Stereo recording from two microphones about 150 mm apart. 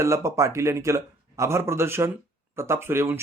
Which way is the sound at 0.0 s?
20° right (ahead or behind).